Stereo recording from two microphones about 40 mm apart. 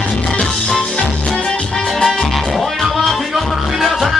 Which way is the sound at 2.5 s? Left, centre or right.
Centre.